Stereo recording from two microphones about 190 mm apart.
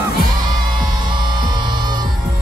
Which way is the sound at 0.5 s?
25° right (ahead or behind).